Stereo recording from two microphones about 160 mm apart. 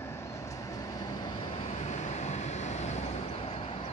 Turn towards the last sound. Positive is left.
turn(degrees=40)  # may be behind; listen again after turning